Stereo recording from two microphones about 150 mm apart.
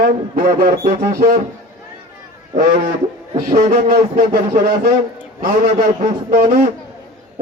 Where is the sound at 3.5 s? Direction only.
75° right (ahead or behind).